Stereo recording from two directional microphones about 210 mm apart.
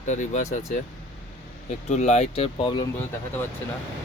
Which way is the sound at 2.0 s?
35° left (ahead or behind).